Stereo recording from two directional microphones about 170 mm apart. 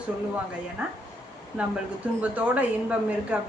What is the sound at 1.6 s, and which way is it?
A woman's voice, 5° right (ahead or behind).